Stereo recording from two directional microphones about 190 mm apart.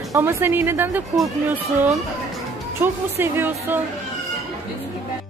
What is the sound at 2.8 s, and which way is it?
Speech, 10° right (ahead or behind).